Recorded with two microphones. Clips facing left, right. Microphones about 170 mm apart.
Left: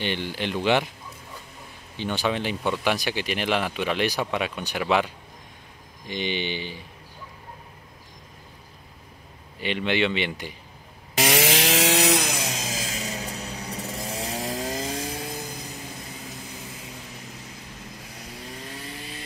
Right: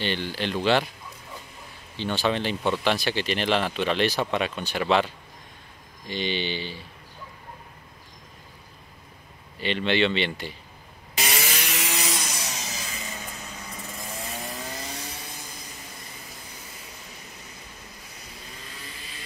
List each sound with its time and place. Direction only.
0.0 s speech: 15° left (ahead or behind)
2.0 s speech: 15° left (ahead or behind)
9.6 s speech: 15° left (ahead or behind)
11.1 s chainsaw: 90° left
13.8 s chainsaw: 35° left (ahead or behind)
14.1 s chainsaw: 90° left
14.9 s chainsaw: 50° left (ahead or behind)